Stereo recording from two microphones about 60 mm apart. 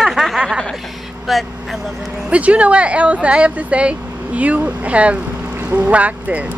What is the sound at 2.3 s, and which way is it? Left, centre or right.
Speech, right.